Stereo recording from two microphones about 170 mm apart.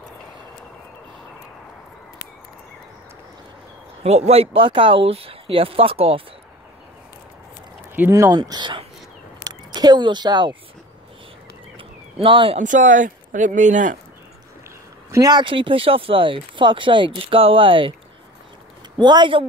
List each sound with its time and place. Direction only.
4.3 s speech: 35° right (ahead or behind)
7.9 s speech: 15° right (ahead or behind)
12.2 s speech: 30° right (ahead or behind)
12.5 s speech: 50° right (ahead or behind)
15.0 s speech: 20° right (ahead or behind)
18.9 s speech: 25° right (ahead or behind)